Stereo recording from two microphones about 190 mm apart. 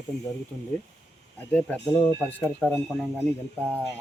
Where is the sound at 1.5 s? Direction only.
5° left (ahead or behind).